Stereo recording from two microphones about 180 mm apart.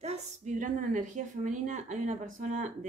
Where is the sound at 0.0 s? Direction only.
40° right (ahead or behind).